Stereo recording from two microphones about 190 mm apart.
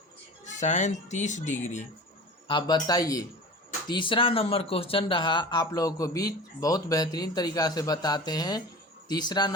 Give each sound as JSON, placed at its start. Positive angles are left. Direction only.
{"t": 0.4, "sound": "speech", "side_deg": 40}
{"t": 2.5, "sound": "speech", "side_deg": 25}